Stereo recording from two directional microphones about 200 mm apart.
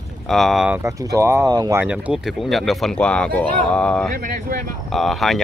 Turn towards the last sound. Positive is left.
turn(degrees=0)  # may be behind; listen again after turning